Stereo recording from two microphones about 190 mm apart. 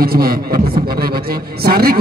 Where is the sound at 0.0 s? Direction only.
50° right (ahead or behind).